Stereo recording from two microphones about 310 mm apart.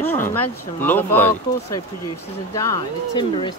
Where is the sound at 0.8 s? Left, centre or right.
Centre.